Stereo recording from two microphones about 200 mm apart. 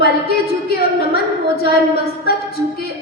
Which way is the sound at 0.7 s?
50° left (ahead or behind).